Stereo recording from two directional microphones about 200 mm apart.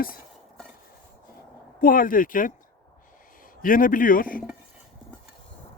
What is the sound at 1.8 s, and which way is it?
Speech, 45° left (ahead or behind).